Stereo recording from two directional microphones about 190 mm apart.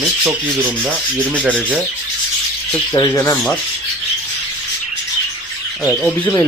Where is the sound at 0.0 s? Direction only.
5° right (ahead or behind).